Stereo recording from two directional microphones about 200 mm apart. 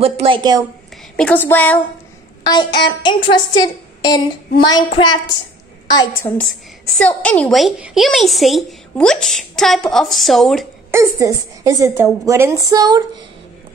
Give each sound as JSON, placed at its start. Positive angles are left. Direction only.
{"t": 0.0, "sound": "a woman's voice", "side_deg": -25}
{"t": 1.1, "sound": "a woman's voice", "side_deg": 5}
{"t": 3.0, "sound": "a woman's voice", "side_deg": 25}
{"t": 7.0, "sound": "a woman's voice", "side_deg": 5}
{"t": 10.9, "sound": "a woman's voice", "side_deg": -15}